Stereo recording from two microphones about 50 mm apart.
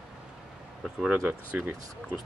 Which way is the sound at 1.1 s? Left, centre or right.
Right.